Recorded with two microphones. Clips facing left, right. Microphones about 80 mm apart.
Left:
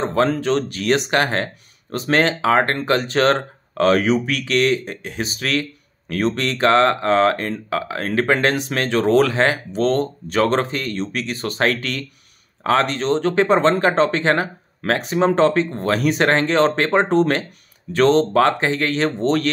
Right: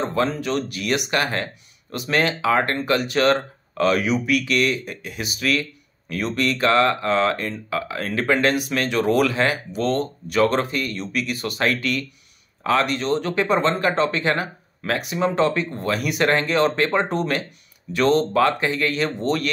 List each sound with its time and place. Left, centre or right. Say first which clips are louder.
0.1 s speech: left 4 dB; left